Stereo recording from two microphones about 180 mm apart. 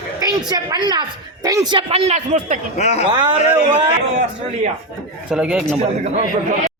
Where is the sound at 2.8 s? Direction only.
40° left (ahead or behind).